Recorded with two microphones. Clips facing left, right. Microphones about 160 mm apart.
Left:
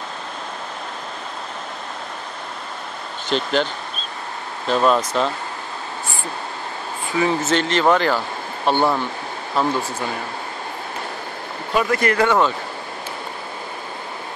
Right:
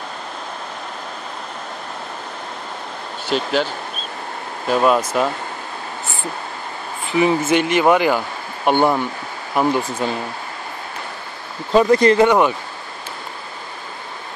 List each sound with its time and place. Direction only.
3.3 s speech: 5° right (ahead or behind)
4.6 s speech: 10° right (ahead or behind)
7.1 s speech: 15° right (ahead or behind)
11.7 s speech: 25° right (ahead or behind)